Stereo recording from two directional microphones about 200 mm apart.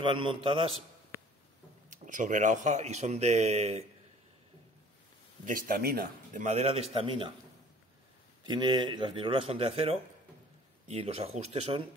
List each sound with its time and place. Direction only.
0.0 s speech: 25° right (ahead or behind)
1.9 s speech: 40° right (ahead or behind)
5.4 s speech: 45° right (ahead or behind); by 7.3 s 25° right (ahead or behind)
8.5 s speech: 20° right (ahead or behind)